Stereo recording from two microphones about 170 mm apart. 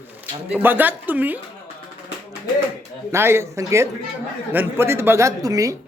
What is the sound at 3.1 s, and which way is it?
A man's voice, 15° right (ahead or behind).